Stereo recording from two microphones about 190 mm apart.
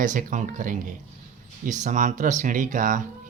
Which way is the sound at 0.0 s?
45° right (ahead or behind).